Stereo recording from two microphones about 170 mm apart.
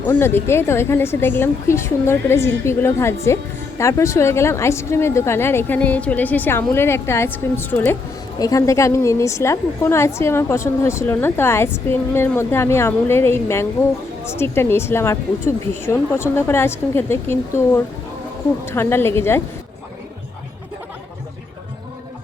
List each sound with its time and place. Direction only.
0.0 s a woman's voice: 10° left (ahead or behind)